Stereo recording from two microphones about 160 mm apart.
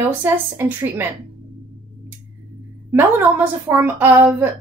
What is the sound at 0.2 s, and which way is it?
Speech, 15° right (ahead or behind).